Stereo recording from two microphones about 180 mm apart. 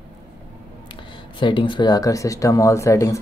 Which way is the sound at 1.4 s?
25° left (ahead or behind).